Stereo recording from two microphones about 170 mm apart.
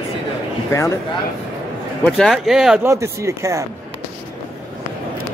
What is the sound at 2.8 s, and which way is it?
Speech, 15° right (ahead or behind).